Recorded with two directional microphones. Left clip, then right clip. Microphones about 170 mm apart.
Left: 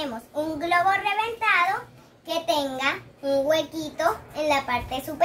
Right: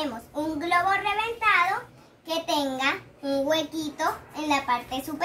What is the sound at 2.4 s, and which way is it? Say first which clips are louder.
A child's voice: left 1 dB; 15° left (ahead or behind).